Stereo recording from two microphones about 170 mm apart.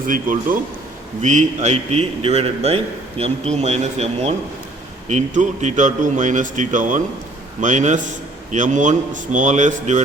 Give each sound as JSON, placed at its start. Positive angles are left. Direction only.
{"t": 0.1, "sound": "a man's voice", "side_deg": -55}